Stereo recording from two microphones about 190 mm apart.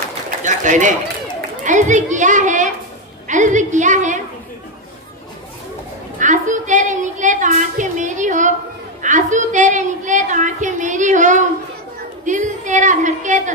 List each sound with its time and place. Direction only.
0.4 s bird: 40° right (ahead or behind)
1.6 s a woman's voice: 40° right (ahead or behind)
6.1 s a woman's voice: 40° right (ahead or behind)